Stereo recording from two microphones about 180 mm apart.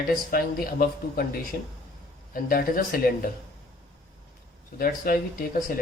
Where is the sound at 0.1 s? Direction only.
55° left (ahead or behind).